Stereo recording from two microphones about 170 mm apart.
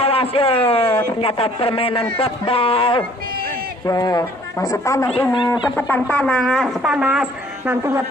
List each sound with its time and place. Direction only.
0.0 s a man's voice: 35° left (ahead or behind)
3.8 s a man's voice: 20° left (ahead or behind); by 8.0 s 15° right (ahead or behind)